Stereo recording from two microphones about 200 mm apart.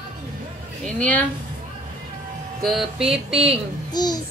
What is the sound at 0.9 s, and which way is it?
Speech, 10° left (ahead or behind).